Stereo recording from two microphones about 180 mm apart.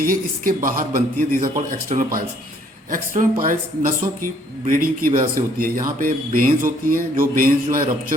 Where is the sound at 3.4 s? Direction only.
50° right (ahead or behind).